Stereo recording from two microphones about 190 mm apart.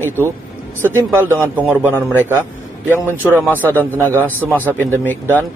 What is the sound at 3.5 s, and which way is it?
Speech, 10° left (ahead or behind).